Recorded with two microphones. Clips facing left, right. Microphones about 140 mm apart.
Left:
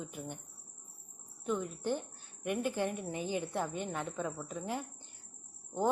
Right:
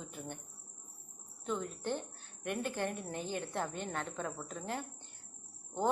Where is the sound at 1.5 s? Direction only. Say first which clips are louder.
Left 3 dB; 10° left (ahead or behind).